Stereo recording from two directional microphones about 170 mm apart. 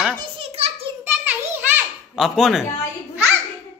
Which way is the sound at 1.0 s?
10° right (ahead or behind).